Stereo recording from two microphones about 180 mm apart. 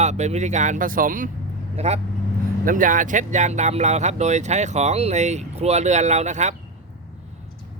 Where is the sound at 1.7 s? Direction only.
40° right (ahead or behind).